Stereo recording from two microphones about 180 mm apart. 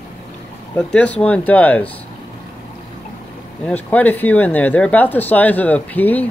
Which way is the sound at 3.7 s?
10° left (ahead or behind).